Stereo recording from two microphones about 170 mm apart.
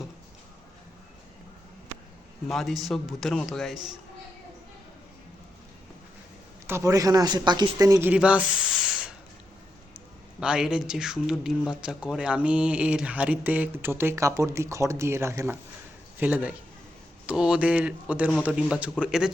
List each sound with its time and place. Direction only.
2.5 s speech: centre (ahead or behind)
6.7 s speech: 20° right (ahead or behind)
8.1 s speech: 5° right (ahead or behind)
10.4 s speech: 5° right (ahead or behind)